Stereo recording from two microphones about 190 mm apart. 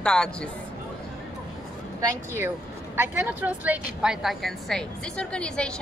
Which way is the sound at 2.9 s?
10° right (ahead or behind).